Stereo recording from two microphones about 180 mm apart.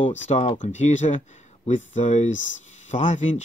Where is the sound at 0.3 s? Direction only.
40° left (ahead or behind).